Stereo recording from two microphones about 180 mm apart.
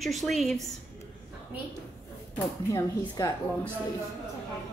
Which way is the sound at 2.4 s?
15° left (ahead or behind).